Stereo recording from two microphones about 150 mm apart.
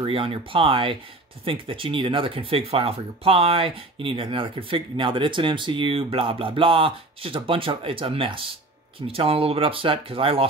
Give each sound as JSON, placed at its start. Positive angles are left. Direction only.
{"t": 0.0, "sound": "speech", "side_deg": -35}